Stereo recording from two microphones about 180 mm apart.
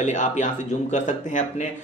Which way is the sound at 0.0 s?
40° left (ahead or behind).